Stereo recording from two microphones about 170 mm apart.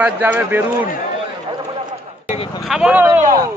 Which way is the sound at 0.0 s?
10° right (ahead or behind).